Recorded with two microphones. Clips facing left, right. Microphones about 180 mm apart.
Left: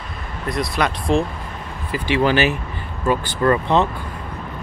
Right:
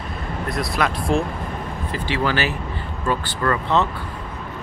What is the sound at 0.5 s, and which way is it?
Speech, centre (ahead or behind).